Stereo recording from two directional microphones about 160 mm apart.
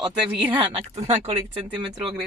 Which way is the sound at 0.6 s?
35° right (ahead or behind).